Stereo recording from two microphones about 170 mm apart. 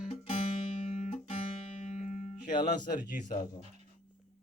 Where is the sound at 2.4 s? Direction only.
25° left (ahead or behind).